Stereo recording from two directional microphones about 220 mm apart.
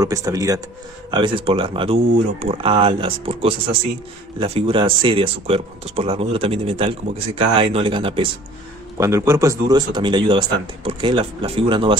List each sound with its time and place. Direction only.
0.0 s speech: 15° right (ahead or behind)
8.9 s speech: 10° right (ahead or behind)